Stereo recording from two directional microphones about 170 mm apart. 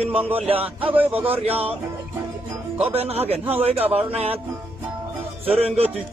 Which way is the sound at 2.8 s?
35° right (ahead or behind).